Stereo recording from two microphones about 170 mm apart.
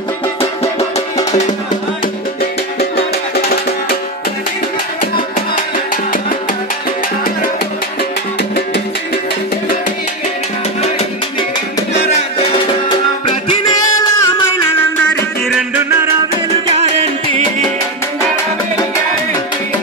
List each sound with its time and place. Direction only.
0.4 s music: 35° left (ahead or behind)
3.3 s music: 65° left (ahead or behind)
13.5 s music: 25° left (ahead or behind)
16.7 s music: 35° right (ahead or behind)